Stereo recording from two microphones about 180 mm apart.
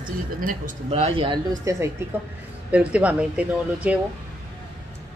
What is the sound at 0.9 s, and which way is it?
Speech, 30° right (ahead or behind).